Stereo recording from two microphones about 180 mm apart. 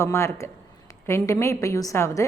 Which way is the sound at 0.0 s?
15° left (ahead or behind).